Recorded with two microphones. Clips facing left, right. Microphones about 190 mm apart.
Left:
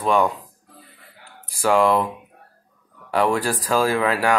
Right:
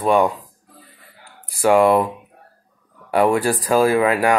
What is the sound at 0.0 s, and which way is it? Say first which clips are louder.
Speech: right 3 dB; 10° right (ahead or behind).